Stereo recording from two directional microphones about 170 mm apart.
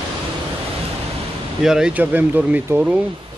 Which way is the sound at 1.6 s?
5° right (ahead or behind).